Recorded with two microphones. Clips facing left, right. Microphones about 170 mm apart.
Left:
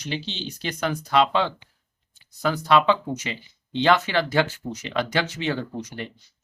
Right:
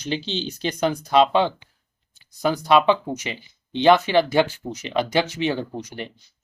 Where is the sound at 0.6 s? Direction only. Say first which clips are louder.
Right 4 dB; 20° right (ahead or behind).